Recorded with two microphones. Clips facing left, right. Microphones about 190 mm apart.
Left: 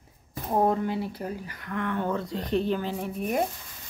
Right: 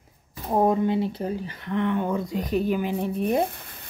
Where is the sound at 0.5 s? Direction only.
20° right (ahead or behind).